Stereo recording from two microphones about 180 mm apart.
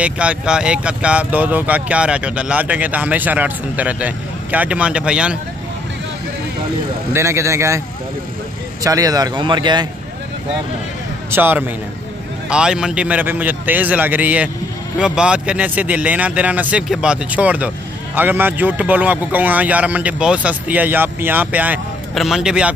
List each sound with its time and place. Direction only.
0.0 s speech: 5° right (ahead or behind)
7.1 s speech: 15° right (ahead or behind)
8.8 s speech: 20° right (ahead or behind)
11.2 s speech: 10° right (ahead or behind)